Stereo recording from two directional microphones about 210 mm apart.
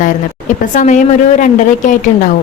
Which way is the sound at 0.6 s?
35° left (ahead or behind).